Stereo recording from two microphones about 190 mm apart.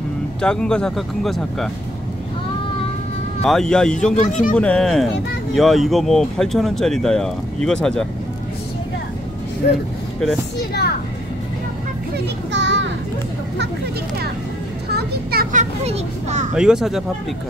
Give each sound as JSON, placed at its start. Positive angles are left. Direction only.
{"t": 0.4, "sound": "speech", "side_deg": 5}
{"t": 3.4, "sound": "speech", "side_deg": 5}
{"t": 4.1, "sound": "speech", "side_deg": 40}
{"t": 4.6, "sound": "speech", "side_deg": 5}
{"t": 12.5, "sound": "children playing", "side_deg": -70}
{"t": 14.9, "sound": "children playing", "side_deg": -60}
{"t": 15.5, "sound": "a child's voice", "side_deg": -35}
{"t": 16.5, "sound": "speech", "side_deg": -5}